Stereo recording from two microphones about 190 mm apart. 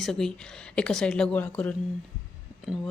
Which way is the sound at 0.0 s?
Centre (ahead or behind).